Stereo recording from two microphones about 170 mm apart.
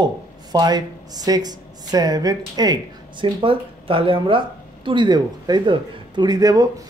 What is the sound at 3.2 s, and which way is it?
Speech, 30° right (ahead or behind).